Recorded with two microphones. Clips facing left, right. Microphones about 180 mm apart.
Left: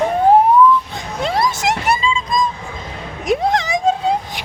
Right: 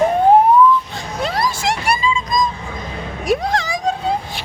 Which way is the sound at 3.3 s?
20° left (ahead or behind).